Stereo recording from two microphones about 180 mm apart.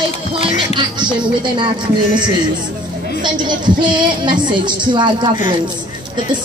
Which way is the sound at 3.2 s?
25° right (ahead or behind).